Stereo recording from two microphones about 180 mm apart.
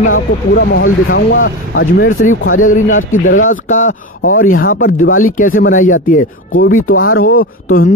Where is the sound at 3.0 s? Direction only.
90° left.